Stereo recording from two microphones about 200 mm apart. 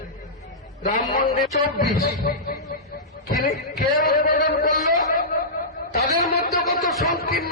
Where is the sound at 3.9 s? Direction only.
45° left (ahead or behind).